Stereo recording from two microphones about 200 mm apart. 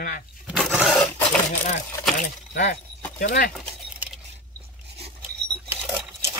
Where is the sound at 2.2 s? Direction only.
45° left (ahead or behind).